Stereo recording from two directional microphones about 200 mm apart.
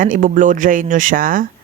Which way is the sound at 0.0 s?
40° right (ahead or behind).